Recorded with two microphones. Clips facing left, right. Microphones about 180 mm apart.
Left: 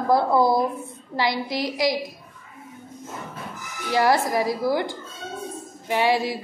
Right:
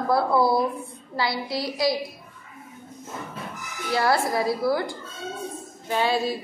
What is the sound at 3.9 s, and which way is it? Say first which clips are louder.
A woman's voice: left 2 dB; 15° left (ahead or behind).